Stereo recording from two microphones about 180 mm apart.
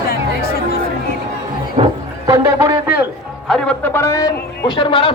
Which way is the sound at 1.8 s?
35° right (ahead or behind).